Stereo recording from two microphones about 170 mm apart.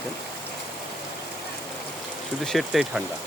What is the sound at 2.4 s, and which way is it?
Speech, centre (ahead or behind).